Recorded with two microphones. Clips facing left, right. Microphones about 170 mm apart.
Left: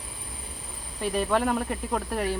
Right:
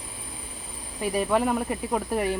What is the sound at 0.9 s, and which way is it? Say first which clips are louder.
Speech: right 1 dB; 5° right (ahead or behind).